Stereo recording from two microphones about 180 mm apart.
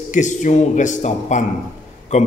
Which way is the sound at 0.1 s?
45° left (ahead or behind).